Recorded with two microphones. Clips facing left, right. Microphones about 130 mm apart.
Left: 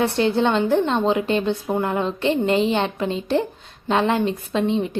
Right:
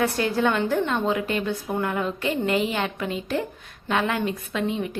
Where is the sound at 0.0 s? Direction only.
25° left (ahead or behind).